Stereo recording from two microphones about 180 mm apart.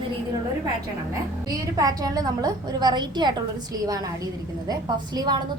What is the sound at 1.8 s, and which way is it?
A woman's voice, 20° right (ahead or behind).